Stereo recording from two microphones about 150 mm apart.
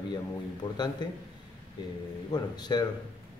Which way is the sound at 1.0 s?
30° left (ahead or behind).